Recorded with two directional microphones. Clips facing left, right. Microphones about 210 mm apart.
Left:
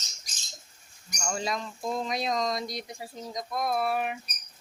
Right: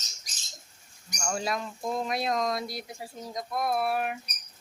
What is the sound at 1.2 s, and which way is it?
Speech, 5° right (ahead or behind).